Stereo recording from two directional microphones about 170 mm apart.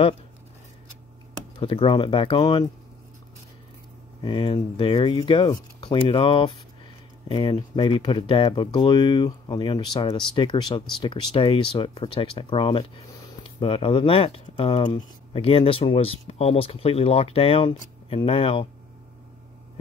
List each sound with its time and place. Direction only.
1.6 s speech: 30° left (ahead or behind)
4.2 s speech: 30° left (ahead or behind)